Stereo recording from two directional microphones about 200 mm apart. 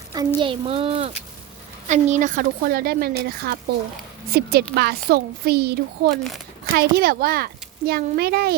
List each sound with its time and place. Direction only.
0.3 s speech: 25° right (ahead or behind); by 8.5 s 50° right (ahead or behind)